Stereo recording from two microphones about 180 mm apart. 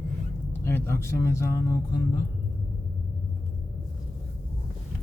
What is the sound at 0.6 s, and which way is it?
Speech, 15° left (ahead or behind).